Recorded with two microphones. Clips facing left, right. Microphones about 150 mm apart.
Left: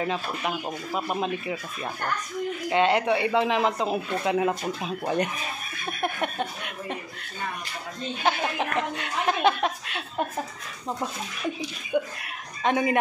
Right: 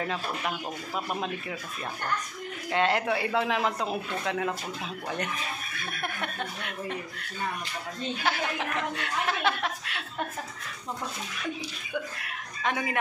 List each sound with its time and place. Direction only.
0.0 s speech: 10° left (ahead or behind)
2.7 s a man's voice: centre (ahead or behind)
4.2 s speech: 15° left (ahead or behind)
8.2 s speech: 20° left (ahead or behind)
11.9 s speech: 15° left (ahead or behind)